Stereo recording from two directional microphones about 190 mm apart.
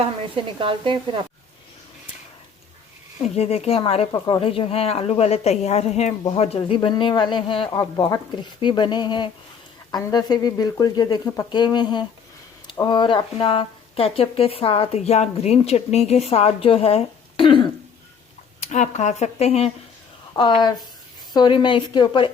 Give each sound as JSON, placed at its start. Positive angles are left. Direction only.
{"t": 0.0, "sound": "a woman's voice", "side_deg": -25}
{"t": 3.2, "sound": "speech", "side_deg": 35}
{"t": 18.6, "sound": "speech", "side_deg": 40}
{"t": 20.3, "sound": "speech", "side_deg": 25}